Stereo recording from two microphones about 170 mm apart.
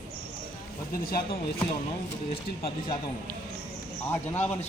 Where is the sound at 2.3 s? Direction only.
35° left (ahead or behind).